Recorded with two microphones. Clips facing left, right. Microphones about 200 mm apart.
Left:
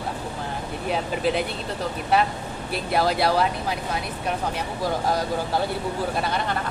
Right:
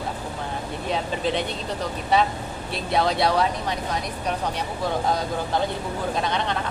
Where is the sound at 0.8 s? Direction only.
5° left (ahead or behind).